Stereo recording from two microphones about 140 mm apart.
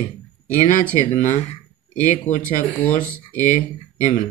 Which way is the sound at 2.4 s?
10° left (ahead or behind).